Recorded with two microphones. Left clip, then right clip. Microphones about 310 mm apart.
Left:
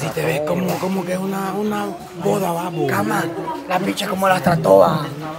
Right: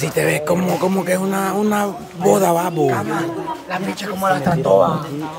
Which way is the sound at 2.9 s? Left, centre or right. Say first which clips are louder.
Even; left.